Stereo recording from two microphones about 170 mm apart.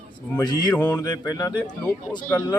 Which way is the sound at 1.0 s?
20° left (ahead or behind).